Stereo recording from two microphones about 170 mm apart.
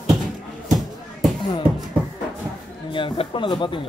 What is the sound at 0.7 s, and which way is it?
Music, centre (ahead or behind).